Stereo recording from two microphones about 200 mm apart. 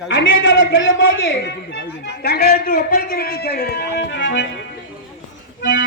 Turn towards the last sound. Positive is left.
turn(degrees=65)  # may be behind; listen again after turning